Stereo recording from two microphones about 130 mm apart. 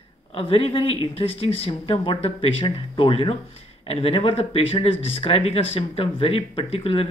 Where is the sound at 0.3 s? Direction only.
45° left (ahead or behind).